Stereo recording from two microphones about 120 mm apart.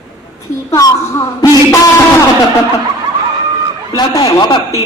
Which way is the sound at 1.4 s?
25° left (ahead or behind).